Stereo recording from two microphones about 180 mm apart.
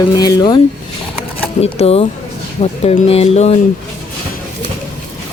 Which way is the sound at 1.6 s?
35° left (ahead or behind).